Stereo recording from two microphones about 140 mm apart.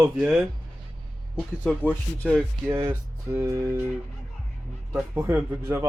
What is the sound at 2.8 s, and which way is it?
Music, 20° right (ahead or behind).